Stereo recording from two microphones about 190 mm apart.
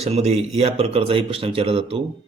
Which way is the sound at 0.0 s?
35° right (ahead or behind).